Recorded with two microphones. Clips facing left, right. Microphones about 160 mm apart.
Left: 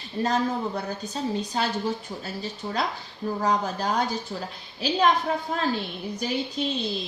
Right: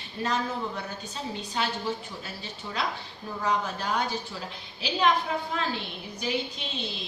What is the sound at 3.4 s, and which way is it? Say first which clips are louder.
Speech: left 2 dB; 40° left (ahead or behind).